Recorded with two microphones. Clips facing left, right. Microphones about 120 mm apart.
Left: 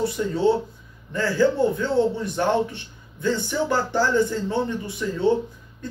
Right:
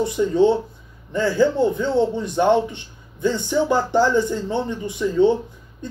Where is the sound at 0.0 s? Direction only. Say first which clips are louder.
Right 4 dB; 20° right (ahead or behind).